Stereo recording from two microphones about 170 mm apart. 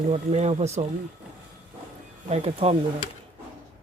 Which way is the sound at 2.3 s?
40° right (ahead or behind).